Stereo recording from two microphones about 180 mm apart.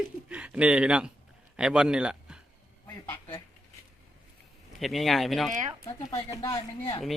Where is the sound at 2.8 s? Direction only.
10° left (ahead or behind).